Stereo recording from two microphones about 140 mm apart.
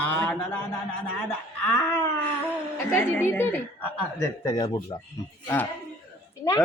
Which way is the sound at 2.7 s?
15° left (ahead or behind).